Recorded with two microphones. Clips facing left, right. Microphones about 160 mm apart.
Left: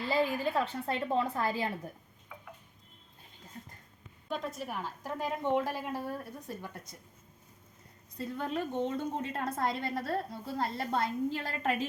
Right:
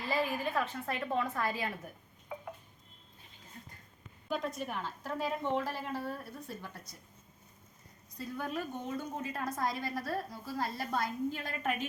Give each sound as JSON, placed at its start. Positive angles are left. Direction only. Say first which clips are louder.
{"t": 0.0, "sound": "a woman's voice", "louder": "left 3 dB", "side_deg": 30}
{"t": 4.3, "sound": "a woman's voice", "louder": "right 1 dB", "side_deg": 5}
{"t": 8.1, "sound": "a woman's voice", "louder": "left 3 dB", "side_deg": 25}